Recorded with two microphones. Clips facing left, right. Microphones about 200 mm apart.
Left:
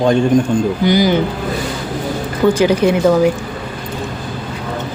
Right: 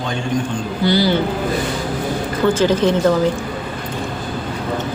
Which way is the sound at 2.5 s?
10° left (ahead or behind).